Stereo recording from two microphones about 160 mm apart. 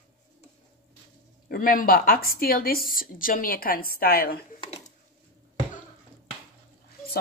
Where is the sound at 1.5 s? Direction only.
60° left (ahead or behind).